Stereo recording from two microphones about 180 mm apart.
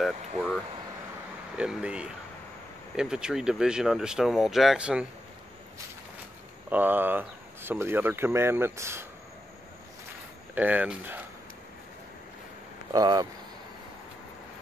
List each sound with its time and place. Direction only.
0.0 s air conditioning: centre (ahead or behind)
1.6 s speech: 5° right (ahead or behind)
6.7 s speech: 10° right (ahead or behind)
10.5 s speech: 10° right (ahead or behind)
12.9 s speech: 20° right (ahead or behind)